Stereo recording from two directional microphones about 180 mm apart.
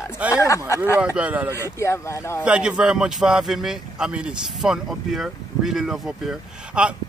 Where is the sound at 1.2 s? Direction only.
10° right (ahead or behind).